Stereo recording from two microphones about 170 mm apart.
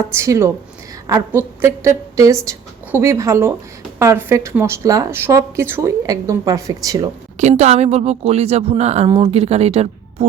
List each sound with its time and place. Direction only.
0.0 s a woman's voice: 15° right (ahead or behind)
7.3 s speech: 40° right (ahead or behind)